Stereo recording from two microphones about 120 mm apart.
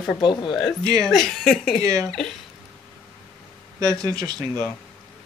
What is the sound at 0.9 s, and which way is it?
Speech, 5° left (ahead or behind).